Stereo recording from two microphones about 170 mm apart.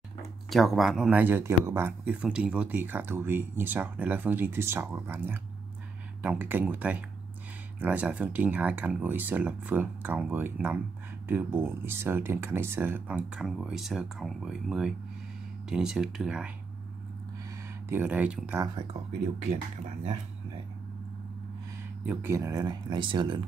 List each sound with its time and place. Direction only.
0.5 s speech: centre (ahead or behind)
17.5 s speech: 15° right (ahead or behind)
19.4 s speech: 40° right (ahead or behind)
22.0 s speech: 10° right (ahead or behind); by 23.4 s 30° right (ahead or behind)